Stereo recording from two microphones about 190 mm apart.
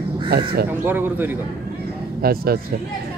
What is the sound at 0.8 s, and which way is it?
Speech, 10° right (ahead or behind).